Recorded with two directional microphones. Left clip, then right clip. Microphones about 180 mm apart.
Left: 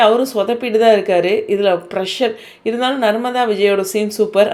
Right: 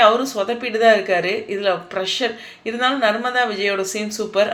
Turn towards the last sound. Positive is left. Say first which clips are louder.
# left 6 dB
turn(degrees=40)  # may be behind; listen again after turning